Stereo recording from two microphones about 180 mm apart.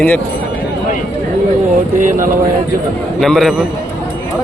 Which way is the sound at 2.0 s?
45° right (ahead or behind).